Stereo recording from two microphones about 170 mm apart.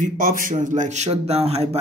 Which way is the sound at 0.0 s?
55° right (ahead or behind).